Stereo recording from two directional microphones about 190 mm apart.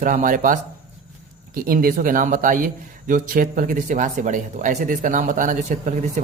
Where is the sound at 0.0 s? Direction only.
45° right (ahead or behind).